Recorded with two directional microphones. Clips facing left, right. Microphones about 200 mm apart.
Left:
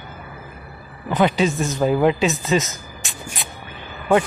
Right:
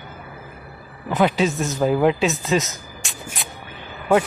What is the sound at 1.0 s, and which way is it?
Speech, centre (ahead or behind).